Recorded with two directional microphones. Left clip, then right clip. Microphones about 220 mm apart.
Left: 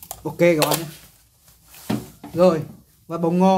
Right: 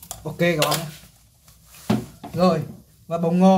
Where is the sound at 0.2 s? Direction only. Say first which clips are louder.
Left 4 dB; 25° left (ahead or behind).